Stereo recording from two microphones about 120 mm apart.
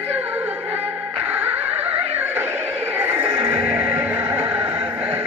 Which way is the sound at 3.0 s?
15° right (ahead or behind).